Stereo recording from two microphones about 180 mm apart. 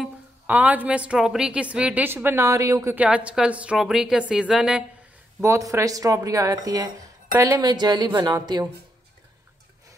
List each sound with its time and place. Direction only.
0.0 s a woman's voice: 10° right (ahead or behind)
5.4 s a woman's voice: 15° right (ahead or behind)